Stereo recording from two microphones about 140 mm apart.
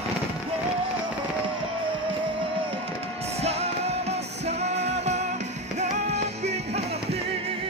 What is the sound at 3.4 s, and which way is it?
Music, 50° right (ahead or behind).